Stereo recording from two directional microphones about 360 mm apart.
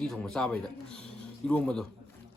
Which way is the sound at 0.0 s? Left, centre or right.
Centre.